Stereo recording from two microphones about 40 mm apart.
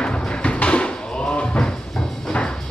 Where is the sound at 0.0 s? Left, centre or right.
Left.